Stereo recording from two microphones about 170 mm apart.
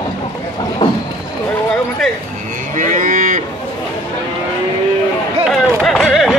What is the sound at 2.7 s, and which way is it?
Cattle, 50° right (ahead or behind).